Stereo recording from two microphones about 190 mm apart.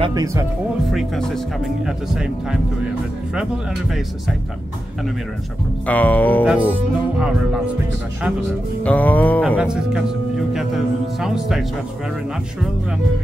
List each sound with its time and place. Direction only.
0.0 s speech: 20° right (ahead or behind)
0.8 s speech: centre (ahead or behind)
5.9 s music: 10° left (ahead or behind)
6.4 s speech: 5° right (ahead or behind)
8.8 s music: 10° left (ahead or behind)
9.6 s speech: 5° right (ahead or behind)